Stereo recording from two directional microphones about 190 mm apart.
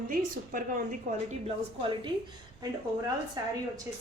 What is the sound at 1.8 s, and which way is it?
Speech, 25° right (ahead or behind).